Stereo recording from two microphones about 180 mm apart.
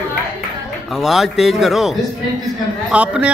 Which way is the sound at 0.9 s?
Centre (ahead or behind).